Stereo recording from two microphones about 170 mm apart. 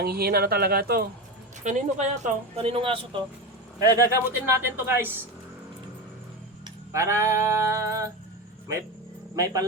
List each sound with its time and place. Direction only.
0.0 s speech: 65° right (ahead or behind)
1.6 s speech: 45° right (ahead or behind)
3.9 s speech: 15° right (ahead or behind)
6.9 s speech: 15° right (ahead or behind)
9.3 s speech: 20° right (ahead or behind)